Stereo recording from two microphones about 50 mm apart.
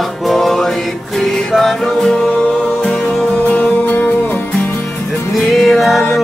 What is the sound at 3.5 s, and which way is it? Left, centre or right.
Music, left.